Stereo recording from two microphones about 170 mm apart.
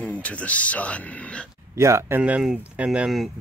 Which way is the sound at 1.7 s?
15° right (ahead or behind).